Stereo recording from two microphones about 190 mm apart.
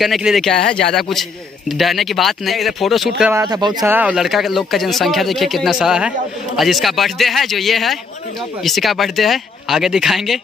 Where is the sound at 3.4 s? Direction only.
20° right (ahead or behind).